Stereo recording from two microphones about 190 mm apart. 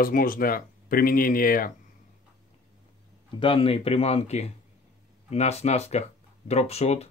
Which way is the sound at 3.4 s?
30° left (ahead or behind).